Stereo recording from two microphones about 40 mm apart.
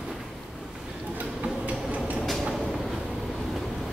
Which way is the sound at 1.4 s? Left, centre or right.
Right.